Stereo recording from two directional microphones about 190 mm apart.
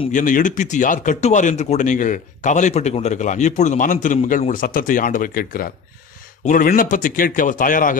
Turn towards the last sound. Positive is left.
turn(degrees=45)  # may be behind; listen again after turning